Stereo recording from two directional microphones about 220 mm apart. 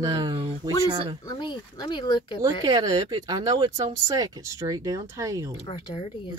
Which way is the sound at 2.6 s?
15° right (ahead or behind).